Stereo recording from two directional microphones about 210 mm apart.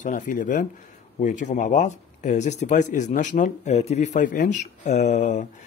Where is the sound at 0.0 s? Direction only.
35° left (ahead or behind).